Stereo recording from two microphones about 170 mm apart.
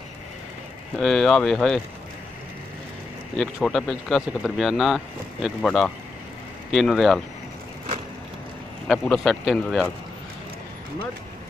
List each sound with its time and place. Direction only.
0.9 s speech: centre (ahead or behind)
3.6 s speech: centre (ahead or behind)
8.8 s speech: 5° left (ahead or behind)